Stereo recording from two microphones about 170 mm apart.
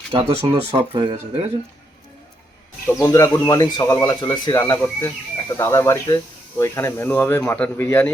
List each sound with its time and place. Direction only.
0.1 s speech: 30° right (ahead or behind)
2.8 s speech: 15° left (ahead or behind)